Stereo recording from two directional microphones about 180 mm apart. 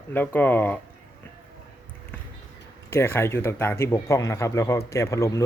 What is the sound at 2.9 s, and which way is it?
Speech, 15° left (ahead or behind).